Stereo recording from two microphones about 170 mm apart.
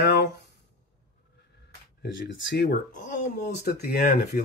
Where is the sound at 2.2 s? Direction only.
70° left (ahead or behind).